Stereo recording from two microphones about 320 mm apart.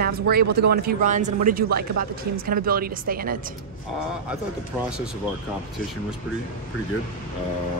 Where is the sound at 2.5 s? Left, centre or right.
Right.